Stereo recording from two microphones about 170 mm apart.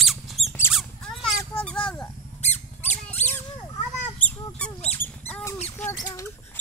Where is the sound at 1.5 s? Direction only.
5° left (ahead or behind).